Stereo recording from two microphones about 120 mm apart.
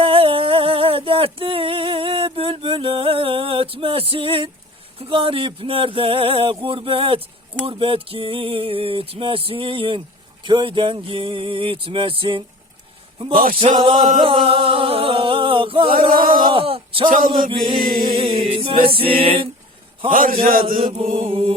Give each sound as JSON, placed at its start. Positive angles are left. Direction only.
{"t": 0.0, "sound": "a sound", "side_deg": -50}
{"t": 4.9, "sound": "speech", "side_deg": -50}
{"t": 13.7, "sound": "a sound", "side_deg": -40}
{"t": 14.2, "sound": "speech", "side_deg": -50}
{"t": 18.2, "sound": "music", "side_deg": -45}
{"t": 21.0, "sound": "speech", "side_deg": -55}